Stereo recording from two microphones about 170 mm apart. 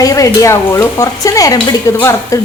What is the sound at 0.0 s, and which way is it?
Speech, 20° left (ahead or behind).